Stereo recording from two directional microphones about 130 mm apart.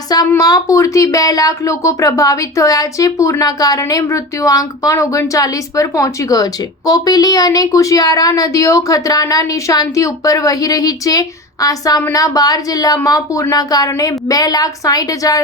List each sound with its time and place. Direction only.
0.1 s speech: 30° left (ahead or behind)